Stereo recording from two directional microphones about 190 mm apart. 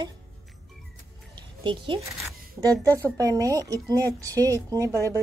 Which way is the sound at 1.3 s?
25° right (ahead or behind).